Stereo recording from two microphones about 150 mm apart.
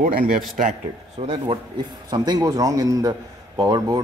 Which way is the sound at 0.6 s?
50° right (ahead or behind).